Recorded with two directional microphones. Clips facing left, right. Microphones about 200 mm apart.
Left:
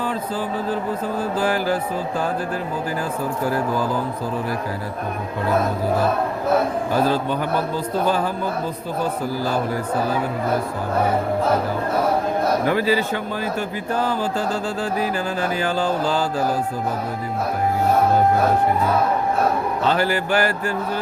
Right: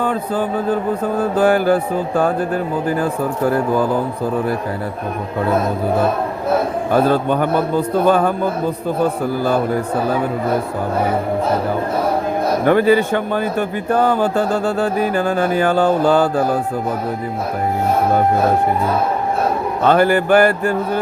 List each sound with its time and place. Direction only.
0.0 s a man's voice: 55° right (ahead or behind)
6.9 s a man's voice: 55° right (ahead or behind)
12.6 s a man's voice: 55° right (ahead or behind)
19.8 s a man's voice: 55° right (ahead or behind)